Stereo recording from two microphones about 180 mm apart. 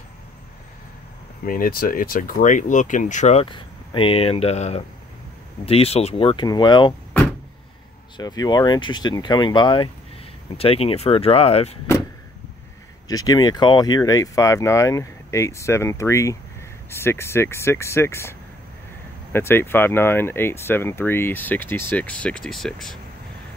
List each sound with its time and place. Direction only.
1.4 s speech: 50° left (ahead or behind)
3.4 s speech: 25° left (ahead or behind)
8.2 s speech: 20° left (ahead or behind)
13.1 s speech: 20° left (ahead or behind)
19.3 s speech: 10° left (ahead or behind)